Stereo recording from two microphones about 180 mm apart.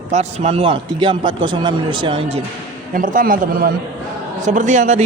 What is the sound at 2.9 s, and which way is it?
A man's voice, 50° right (ahead or behind).